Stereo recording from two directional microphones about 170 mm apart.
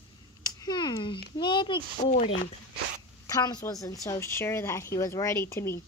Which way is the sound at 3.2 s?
20° left (ahead or behind).